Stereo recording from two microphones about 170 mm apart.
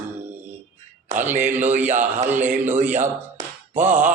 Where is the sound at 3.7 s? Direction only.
10° right (ahead or behind).